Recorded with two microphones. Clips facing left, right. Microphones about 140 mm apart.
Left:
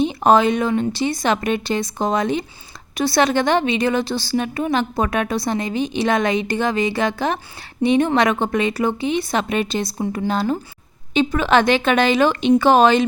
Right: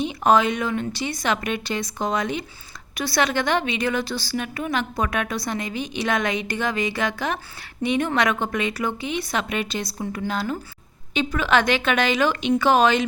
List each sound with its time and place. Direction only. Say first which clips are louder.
0.0 s a woman's voice: left 4 dB; 30° left (ahead or behind)